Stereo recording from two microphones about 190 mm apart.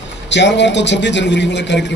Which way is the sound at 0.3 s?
70° left (ahead or behind).